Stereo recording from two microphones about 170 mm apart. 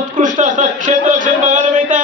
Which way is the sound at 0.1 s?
50° right (ahead or behind).